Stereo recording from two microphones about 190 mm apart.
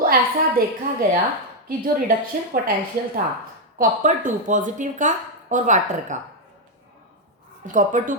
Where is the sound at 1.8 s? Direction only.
45° right (ahead or behind).